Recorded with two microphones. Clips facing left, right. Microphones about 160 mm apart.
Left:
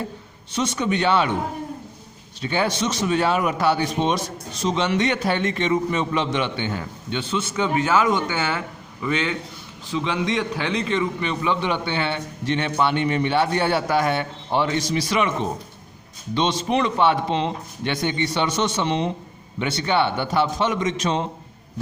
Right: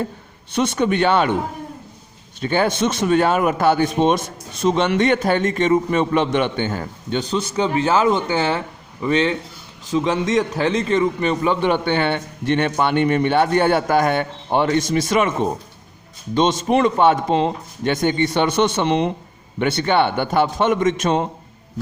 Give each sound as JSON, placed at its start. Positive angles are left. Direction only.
{"t": 0.5, "sound": "a man's voice", "side_deg": -55}
{"t": 2.4, "sound": "a man's voice", "side_deg": -50}